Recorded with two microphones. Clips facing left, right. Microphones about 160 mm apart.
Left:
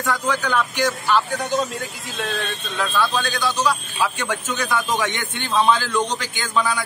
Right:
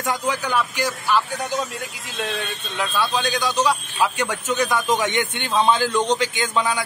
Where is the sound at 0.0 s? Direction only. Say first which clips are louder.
Left 1 dB; 15° right (ahead or behind).